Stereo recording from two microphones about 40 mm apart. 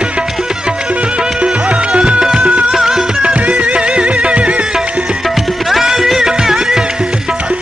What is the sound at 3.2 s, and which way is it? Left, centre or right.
Music, right.